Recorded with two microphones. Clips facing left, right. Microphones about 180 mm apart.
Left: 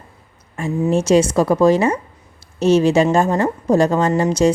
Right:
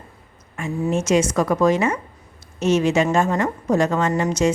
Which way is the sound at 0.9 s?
35° left (ahead or behind).